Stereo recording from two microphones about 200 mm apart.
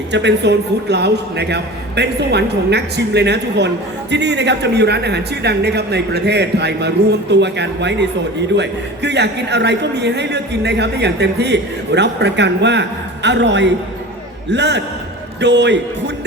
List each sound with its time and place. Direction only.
0.1 s a man's voice: 60° right (ahead or behind)